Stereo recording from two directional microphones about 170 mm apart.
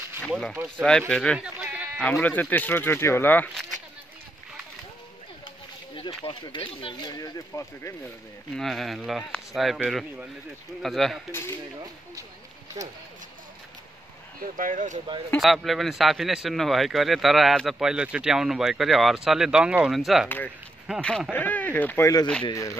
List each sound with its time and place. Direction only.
0.3 s speech: 5° left (ahead or behind)
1.6 s sheep: 5° right (ahead or behind)
2.0 s speech: 10° left (ahead or behind)
5.9 s speech: 30° left (ahead or behind)
8.5 s speech: centre (ahead or behind)
10.8 s speech: centre (ahead or behind)
14.4 s speech: 50° right (ahead or behind)
15.3 s speech: centre (ahead or behind)
20.2 s speech: 10° left (ahead or behind)